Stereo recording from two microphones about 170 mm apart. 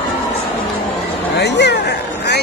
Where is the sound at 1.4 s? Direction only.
90° left.